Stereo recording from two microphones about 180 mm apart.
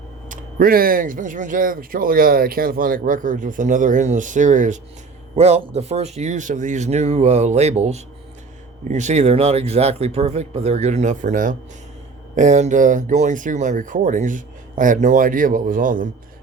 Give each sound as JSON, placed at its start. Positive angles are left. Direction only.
{"t": 0.3, "sound": "speech", "side_deg": -55}